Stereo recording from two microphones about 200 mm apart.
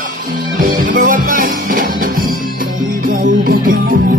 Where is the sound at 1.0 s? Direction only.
45° right (ahead or behind).